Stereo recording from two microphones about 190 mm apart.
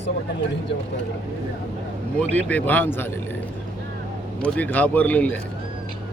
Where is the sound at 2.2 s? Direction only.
10° left (ahead or behind).